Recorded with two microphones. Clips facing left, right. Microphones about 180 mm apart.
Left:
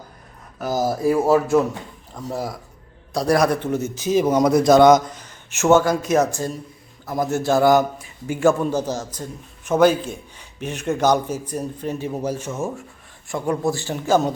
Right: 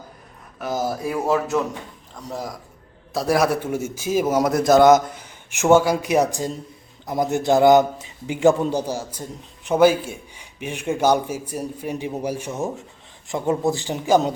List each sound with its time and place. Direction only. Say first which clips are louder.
1.1 s a man's voice: left 4 dB; 10° left (ahead or behind)
3.1 s a man's voice: left 1 dB; 5° right (ahead or behind)